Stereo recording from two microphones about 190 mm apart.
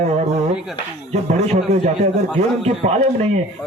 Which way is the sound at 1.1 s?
35° right (ahead or behind).